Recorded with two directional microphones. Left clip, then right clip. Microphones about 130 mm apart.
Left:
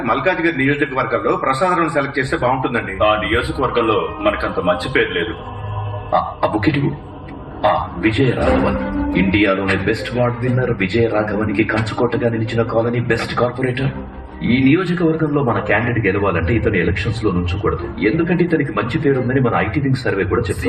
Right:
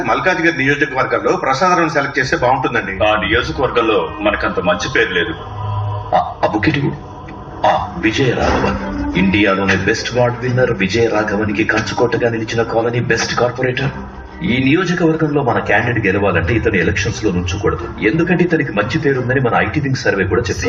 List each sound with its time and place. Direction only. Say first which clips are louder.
0.0 s a man's voice: right 3 dB; 35° left (ahead or behind)
6.1 s music: right 2 dB; 35° left (ahead or behind)
7.6 s a man's voice: right 2 dB; 40° left (ahead or behind)